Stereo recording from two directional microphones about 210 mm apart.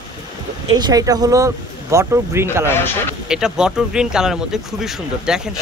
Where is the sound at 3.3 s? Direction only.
5° right (ahead or behind).